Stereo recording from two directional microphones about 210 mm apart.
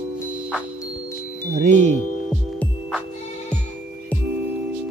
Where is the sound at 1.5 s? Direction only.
35° right (ahead or behind).